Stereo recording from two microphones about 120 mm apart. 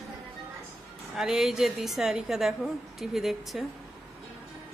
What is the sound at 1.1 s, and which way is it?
Speech, 5° right (ahead or behind).